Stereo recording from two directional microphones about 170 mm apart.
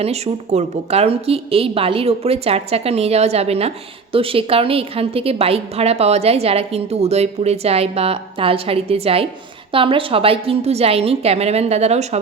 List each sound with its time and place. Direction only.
0.0 s a woman's voice: 40° right (ahead or behind)